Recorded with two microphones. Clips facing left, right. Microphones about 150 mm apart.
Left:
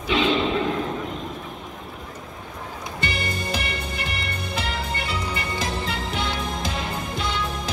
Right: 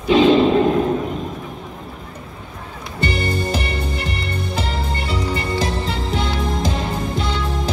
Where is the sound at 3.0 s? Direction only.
35° right (ahead or behind).